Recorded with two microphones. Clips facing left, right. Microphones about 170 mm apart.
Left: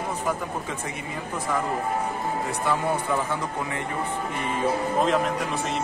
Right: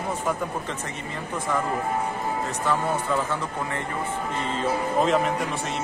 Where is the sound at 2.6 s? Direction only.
15° left (ahead or behind).